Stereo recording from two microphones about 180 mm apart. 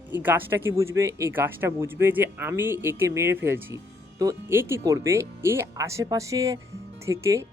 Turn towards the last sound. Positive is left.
turn(degrees=-15)  # may be behind; listen again after turning